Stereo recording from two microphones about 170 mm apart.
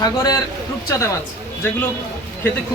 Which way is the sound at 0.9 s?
20° left (ahead or behind).